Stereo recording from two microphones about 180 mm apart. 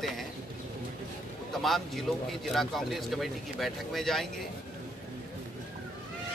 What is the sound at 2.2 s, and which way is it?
Speech, centre (ahead or behind).